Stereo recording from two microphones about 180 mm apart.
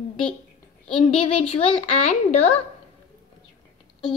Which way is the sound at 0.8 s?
30° left (ahead or behind).